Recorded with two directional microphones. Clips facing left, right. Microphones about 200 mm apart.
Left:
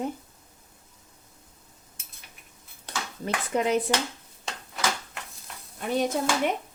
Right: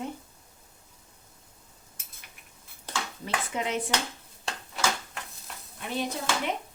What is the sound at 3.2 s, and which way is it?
Speech, 40° left (ahead or behind).